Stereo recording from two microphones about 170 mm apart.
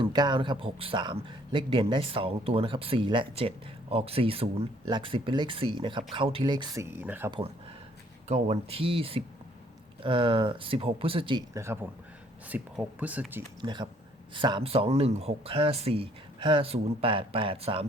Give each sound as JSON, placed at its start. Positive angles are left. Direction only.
{"t": 0.0, "sound": "speech", "side_deg": -25}
{"t": 6.9, "sound": "speech", "side_deg": -10}
{"t": 7.3, "sound": "speech", "side_deg": -30}
{"t": 11.5, "sound": "speech", "side_deg": -15}
{"t": 13.6, "sound": "speech", "side_deg": -25}